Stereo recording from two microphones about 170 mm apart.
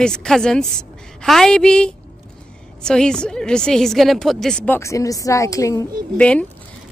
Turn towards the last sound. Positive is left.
turn(degrees=5)  # may be behind; listen again after turning